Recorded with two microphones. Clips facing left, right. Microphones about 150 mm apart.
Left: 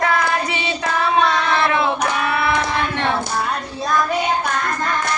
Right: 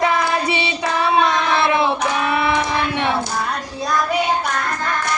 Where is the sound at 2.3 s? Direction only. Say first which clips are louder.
Right 1 dB; 20° right (ahead or behind).